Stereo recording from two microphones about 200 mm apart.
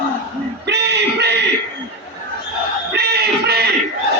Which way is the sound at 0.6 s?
55° right (ahead or behind).